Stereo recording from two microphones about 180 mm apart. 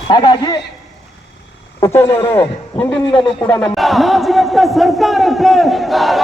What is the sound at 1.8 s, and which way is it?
A man's voice, 15° left (ahead or behind).